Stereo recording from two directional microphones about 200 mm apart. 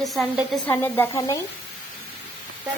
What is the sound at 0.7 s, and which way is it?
Speech, 15° left (ahead or behind).